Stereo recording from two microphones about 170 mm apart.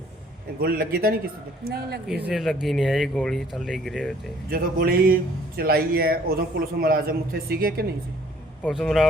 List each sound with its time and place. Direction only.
0.6 s a man's voice: 60° right (ahead or behind)
2.0 s speech: 5° right (ahead or behind)
4.4 s a man's voice: 60° right (ahead or behind)
8.6 s speech: 5° left (ahead or behind)